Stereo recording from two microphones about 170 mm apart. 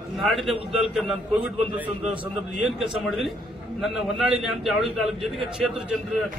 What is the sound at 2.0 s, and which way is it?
Speech, 30° right (ahead or behind).